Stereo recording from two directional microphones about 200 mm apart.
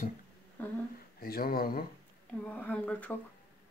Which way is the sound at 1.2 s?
45° left (ahead or behind).